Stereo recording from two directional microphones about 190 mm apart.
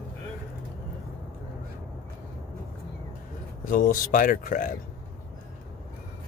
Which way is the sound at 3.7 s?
45° left (ahead or behind).